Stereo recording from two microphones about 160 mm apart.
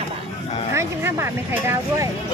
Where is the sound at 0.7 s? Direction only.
15° right (ahead or behind).